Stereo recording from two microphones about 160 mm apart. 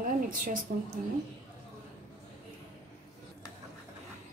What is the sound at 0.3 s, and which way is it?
Speech, 55° right (ahead or behind).